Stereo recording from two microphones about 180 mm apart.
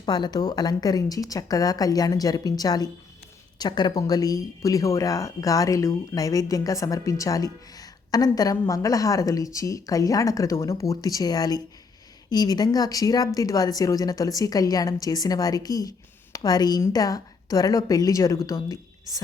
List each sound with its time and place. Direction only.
0.0 s speech: 25° left (ahead or behind)